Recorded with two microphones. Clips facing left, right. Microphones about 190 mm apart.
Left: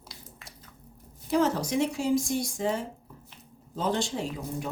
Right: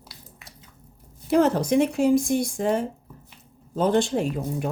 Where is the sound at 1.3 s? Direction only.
60° right (ahead or behind).